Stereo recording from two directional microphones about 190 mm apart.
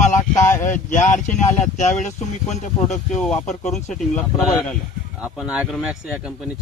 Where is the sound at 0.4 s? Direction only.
10° left (ahead or behind).